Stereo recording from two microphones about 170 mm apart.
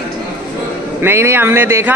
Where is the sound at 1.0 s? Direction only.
15° right (ahead or behind).